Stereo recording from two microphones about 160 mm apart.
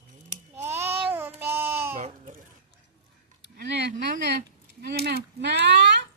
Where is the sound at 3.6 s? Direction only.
90° right.